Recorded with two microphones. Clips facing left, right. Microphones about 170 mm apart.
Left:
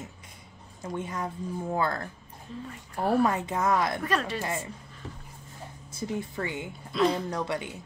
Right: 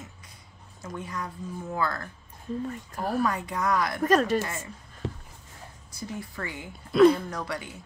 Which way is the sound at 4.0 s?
45° right (ahead or behind).